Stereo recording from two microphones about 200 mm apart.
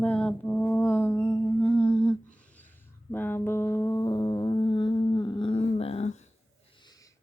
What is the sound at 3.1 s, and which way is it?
Music, 10° left (ahead or behind).